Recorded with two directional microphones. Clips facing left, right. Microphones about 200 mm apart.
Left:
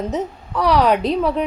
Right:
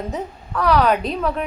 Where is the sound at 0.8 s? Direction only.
25° left (ahead or behind).